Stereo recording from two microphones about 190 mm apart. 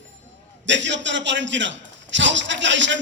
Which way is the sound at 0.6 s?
70° right (ahead or behind).